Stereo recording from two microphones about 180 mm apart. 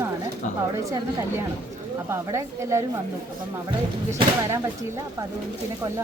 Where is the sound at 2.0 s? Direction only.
15° right (ahead or behind).